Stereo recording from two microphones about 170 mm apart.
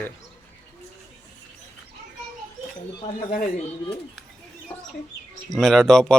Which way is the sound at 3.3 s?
55° left (ahead or behind).